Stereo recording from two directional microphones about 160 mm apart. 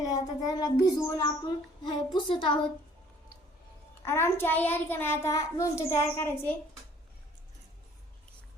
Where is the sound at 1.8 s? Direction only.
30° left (ahead or behind).